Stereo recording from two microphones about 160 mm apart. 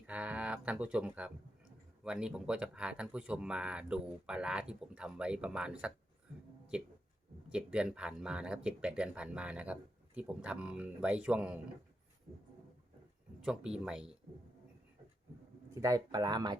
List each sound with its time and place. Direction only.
0.1 s a sound: 10° right (ahead or behind)
2.0 s speech: 5° right (ahead or behind)
7.5 s speech: 5° right (ahead or behind)
13.4 s speech: 5° right (ahead or behind)
15.7 s speech: 20° right (ahead or behind)